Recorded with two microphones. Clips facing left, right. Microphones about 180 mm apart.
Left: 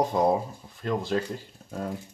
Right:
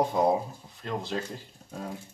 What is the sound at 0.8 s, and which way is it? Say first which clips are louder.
Speech: left 5 dB; 50° left (ahead or behind).